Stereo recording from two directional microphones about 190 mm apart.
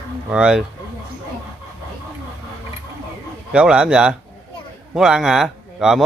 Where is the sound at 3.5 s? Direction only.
5° right (ahead or behind).